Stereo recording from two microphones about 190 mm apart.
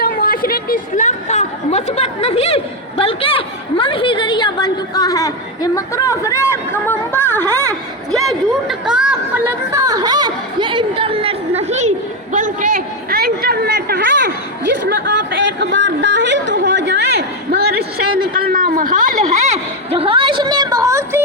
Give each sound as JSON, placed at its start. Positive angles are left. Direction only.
{"t": 0.0, "sound": "a woman's voice", "side_deg": 50}
{"t": 8.1, "sound": "chatter", "side_deg": 0}
{"t": 14.8, "sound": "a sound", "side_deg": -60}